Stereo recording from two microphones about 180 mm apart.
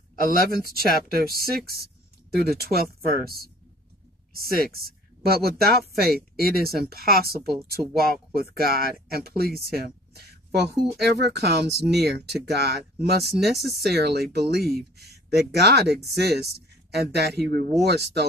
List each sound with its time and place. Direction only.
0.3 s speech: 55° right (ahead or behind)
10.8 s speech: centre (ahead or behind)
11.1 s speech: 65° right (ahead or behind)